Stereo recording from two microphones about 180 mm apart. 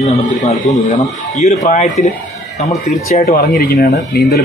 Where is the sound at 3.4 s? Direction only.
55° left (ahead or behind).